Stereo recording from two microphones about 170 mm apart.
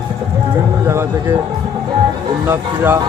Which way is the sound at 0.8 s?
15° right (ahead or behind).